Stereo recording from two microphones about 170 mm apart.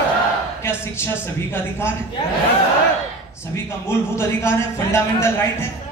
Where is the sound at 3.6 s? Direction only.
15° left (ahead or behind).